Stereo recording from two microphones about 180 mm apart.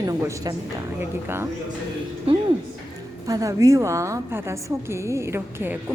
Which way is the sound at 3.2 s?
20° right (ahead or behind).